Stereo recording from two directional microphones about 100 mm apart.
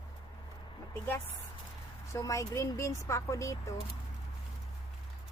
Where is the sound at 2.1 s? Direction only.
35° left (ahead or behind).